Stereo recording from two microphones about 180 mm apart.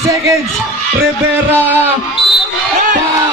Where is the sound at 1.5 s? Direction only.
10° right (ahead or behind).